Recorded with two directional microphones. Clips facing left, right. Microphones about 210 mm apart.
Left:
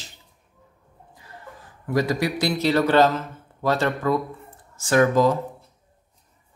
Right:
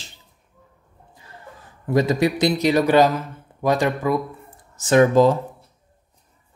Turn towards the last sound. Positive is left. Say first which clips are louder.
# right 4 dB
turn(degrees=-25)  # may be behind; listen again after turning